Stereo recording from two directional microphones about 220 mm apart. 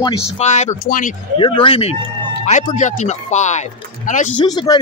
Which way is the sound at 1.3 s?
20° left (ahead or behind).